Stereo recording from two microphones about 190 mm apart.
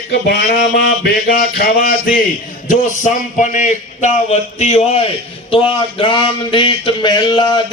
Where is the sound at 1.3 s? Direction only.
45° left (ahead or behind).